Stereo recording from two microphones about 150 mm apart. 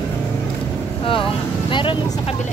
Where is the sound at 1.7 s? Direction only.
35° left (ahead or behind).